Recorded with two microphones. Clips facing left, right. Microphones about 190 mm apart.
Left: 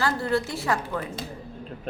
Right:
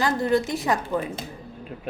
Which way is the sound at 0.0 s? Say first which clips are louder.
Right 3 dB; 15° right (ahead or behind).